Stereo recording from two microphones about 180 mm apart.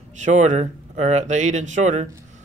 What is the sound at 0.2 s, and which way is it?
Speech, 40° right (ahead or behind).